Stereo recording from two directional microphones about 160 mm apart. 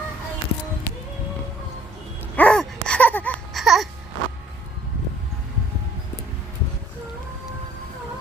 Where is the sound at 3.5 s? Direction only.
Centre (ahead or behind).